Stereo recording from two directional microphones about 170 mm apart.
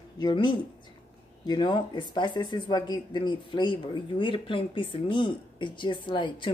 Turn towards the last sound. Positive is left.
turn(degrees=30)  # may be behind; listen again after turning